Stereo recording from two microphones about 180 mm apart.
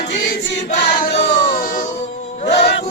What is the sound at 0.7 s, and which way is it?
Choir, 70° left (ahead or behind).